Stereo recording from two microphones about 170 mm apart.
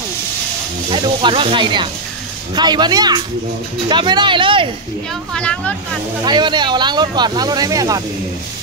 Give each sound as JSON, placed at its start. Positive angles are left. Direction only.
{"t": 0.9, "sound": "speech", "side_deg": -30}
{"t": 5.3, "sound": "speech", "side_deg": 5}
{"t": 6.2, "sound": "speech", "side_deg": -25}